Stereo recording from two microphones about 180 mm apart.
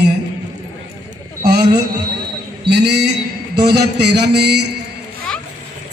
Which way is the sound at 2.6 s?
65° right (ahead or behind).